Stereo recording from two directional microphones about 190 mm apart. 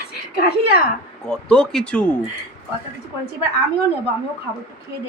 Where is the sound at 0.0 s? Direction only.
55° left (ahead or behind).